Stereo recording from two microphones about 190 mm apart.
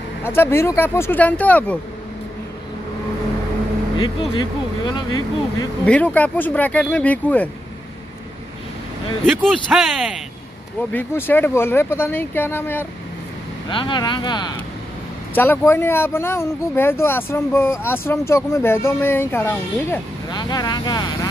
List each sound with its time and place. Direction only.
0.2 s speech: 10° left (ahead or behind)
4.0 s speech: 25° left (ahead or behind)
5.9 s speech: 10° left (ahead or behind)
9.4 s speech: centre (ahead or behind)
10.9 s speech: 10° left (ahead or behind)
13.7 s speech: 25° left (ahead or behind)
15.3 s speech: 10° left (ahead or behind)
20.2 s speech: 20° left (ahead or behind)